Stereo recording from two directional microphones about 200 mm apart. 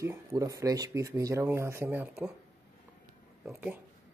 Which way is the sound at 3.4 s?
5° right (ahead or behind).